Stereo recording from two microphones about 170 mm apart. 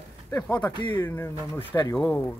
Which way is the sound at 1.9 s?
Centre (ahead or behind).